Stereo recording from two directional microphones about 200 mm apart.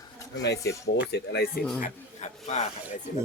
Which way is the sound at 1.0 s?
55° left (ahead or behind).